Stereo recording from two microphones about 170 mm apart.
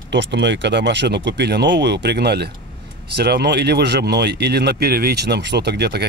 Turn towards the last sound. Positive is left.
turn(degrees=-75)  # may be behind; listen again after turning